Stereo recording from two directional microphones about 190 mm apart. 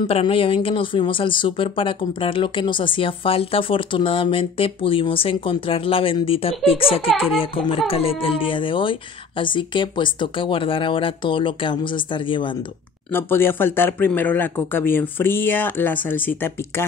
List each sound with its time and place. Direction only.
0.0 s speech: 30° left (ahead or behind)
13.1 s speech: 10° left (ahead or behind)